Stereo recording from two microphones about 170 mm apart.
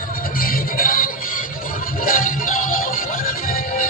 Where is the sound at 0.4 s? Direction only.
55° left (ahead or behind).